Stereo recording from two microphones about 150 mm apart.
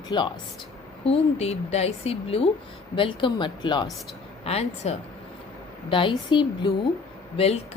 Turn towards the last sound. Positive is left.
turn(degrees=45)  # may be behind; listen again after turning